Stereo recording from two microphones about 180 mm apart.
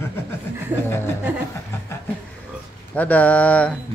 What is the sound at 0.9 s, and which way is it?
Speech, 15° left (ahead or behind).